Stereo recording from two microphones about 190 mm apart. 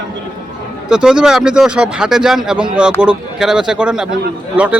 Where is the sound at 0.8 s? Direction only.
5° right (ahead or behind).